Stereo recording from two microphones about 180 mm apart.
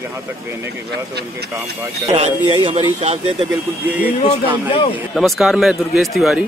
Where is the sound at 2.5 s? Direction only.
30° right (ahead or behind).